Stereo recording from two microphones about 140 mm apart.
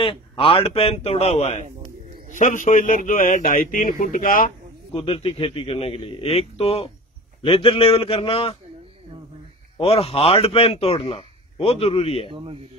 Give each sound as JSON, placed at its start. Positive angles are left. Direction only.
{"t": 0.0, "sound": "a man's voice", "side_deg": 40}
{"t": 2.3, "sound": "a man's voice", "side_deg": 65}
{"t": 4.9, "sound": "a man's voice", "side_deg": 40}
{"t": 9.8, "sound": "a man's voice", "side_deg": 45}